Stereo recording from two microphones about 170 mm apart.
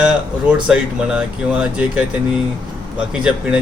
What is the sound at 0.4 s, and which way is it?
Speech, 5° right (ahead or behind).